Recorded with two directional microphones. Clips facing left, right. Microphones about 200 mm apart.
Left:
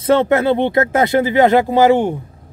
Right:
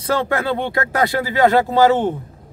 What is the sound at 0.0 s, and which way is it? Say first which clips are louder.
Speech: left 7 dB; 25° left (ahead or behind).